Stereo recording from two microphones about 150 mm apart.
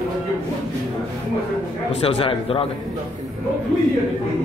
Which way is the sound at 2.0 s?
40° left (ahead or behind).